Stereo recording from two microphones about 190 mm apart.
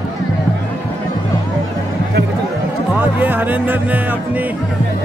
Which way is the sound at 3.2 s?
10° right (ahead or behind).